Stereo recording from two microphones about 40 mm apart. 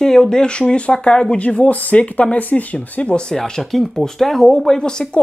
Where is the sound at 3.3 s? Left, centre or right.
Centre.